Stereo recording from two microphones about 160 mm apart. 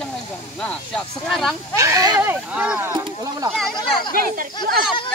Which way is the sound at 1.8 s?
20° right (ahead or behind).